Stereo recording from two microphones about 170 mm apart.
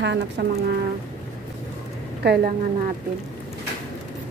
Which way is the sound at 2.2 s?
65° right (ahead or behind).